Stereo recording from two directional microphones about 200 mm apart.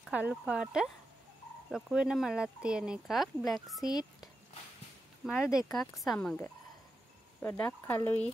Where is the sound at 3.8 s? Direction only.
20° left (ahead or behind).